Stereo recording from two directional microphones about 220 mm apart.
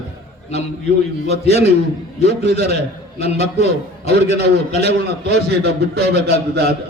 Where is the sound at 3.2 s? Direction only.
30° left (ahead or behind).